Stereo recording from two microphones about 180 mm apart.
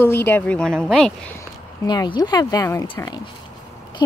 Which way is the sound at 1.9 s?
25° left (ahead or behind).